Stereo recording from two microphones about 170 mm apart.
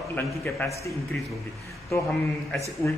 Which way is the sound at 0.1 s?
15° left (ahead or behind).